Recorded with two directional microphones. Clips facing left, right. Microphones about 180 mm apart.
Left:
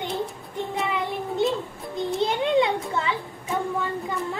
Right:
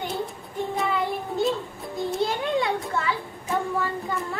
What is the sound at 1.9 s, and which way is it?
Music, 20° left (ahead or behind).